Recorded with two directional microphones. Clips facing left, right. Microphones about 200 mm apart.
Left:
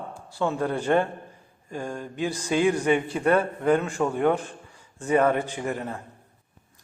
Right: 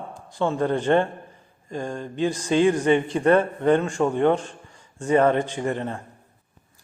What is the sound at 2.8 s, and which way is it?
A man's voice, 10° left (ahead or behind).